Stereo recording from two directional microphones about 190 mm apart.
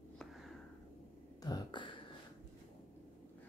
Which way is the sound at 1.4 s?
20° left (ahead or behind).